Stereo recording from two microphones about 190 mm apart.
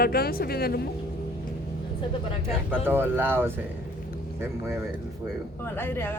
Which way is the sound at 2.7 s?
10° right (ahead or behind).